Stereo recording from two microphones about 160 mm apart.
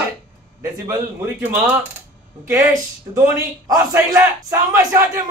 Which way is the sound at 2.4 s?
20° right (ahead or behind).